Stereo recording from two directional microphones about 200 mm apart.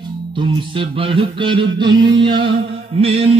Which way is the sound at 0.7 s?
25° right (ahead or behind).